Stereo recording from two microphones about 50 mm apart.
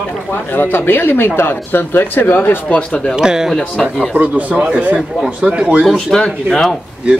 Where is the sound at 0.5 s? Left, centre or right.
Left.